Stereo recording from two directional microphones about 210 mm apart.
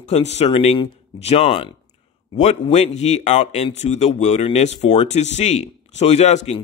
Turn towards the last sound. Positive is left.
turn(degrees=30)  # may be behind; listen again after turning